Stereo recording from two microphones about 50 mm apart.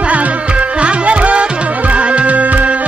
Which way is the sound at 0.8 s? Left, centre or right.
Right.